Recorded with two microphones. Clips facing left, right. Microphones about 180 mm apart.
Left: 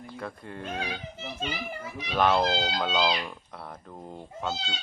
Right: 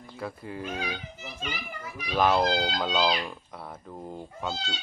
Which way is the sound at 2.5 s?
25° left (ahead or behind).